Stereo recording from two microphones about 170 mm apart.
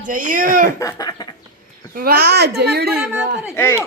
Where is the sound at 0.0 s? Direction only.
50° right (ahead or behind).